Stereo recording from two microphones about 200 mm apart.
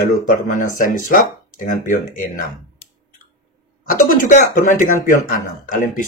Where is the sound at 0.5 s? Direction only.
40° left (ahead or behind).